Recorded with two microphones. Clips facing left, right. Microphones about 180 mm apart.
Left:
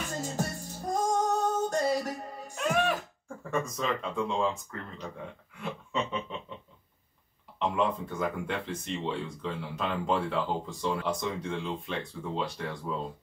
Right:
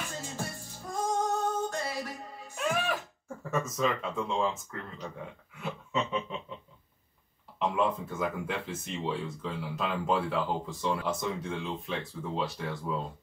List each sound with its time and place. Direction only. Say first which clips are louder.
0.1 s music: left 5 dB; 45° left (ahead or behind)
2.5 s music: left 3 dB; centre (ahead or behind)
3.4 s speech: right 1 dB; centre (ahead or behind)
5.6 s a sound: even; centre (ahead or behind)
7.5 s speech: even; 5° right (ahead or behind)